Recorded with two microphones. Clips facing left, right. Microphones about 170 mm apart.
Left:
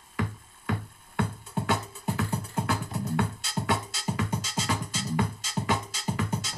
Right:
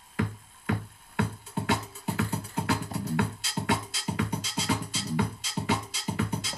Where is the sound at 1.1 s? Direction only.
50° left (ahead or behind).